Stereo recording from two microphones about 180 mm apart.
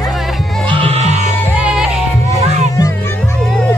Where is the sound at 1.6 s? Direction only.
5° right (ahead or behind).